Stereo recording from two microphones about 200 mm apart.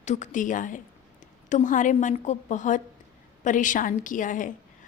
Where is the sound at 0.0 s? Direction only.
35° left (ahead or behind).